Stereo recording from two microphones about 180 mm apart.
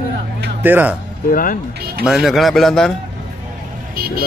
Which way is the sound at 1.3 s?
50° left (ahead or behind).